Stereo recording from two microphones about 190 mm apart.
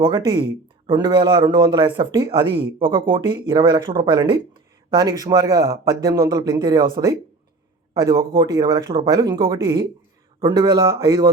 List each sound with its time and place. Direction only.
0.0 s a man's voice: 25° right (ahead or behind)